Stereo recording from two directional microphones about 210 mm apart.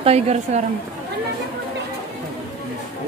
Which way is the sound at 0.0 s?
30° right (ahead or behind).